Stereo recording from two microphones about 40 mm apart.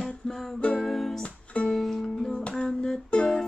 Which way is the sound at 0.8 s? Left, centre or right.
Centre.